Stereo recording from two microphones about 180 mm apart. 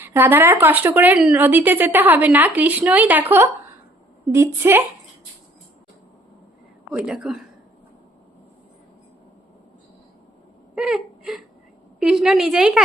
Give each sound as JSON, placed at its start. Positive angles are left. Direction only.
{"t": 0.0, "sound": "speech", "side_deg": -10}
{"t": 6.9, "sound": "speech", "side_deg": -5}
{"t": 10.8, "sound": "a woman's voice", "side_deg": 0}